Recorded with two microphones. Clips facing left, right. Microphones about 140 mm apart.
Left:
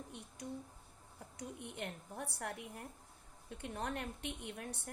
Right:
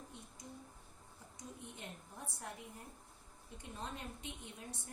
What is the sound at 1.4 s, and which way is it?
A woman's voice, 70° left (ahead or behind).